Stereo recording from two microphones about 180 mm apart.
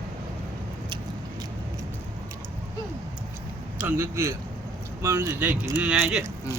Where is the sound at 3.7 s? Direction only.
10° right (ahead or behind).